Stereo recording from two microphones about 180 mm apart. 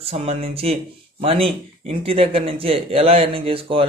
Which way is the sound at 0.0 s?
35° right (ahead or behind).